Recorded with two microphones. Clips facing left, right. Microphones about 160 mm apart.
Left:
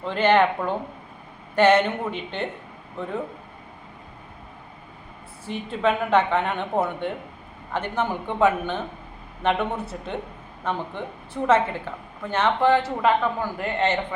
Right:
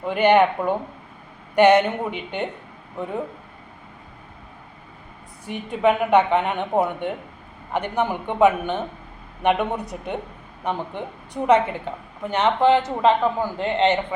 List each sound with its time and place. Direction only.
0.0 s a woman's voice: 15° right (ahead or behind)
5.5 s a woman's voice: 15° right (ahead or behind)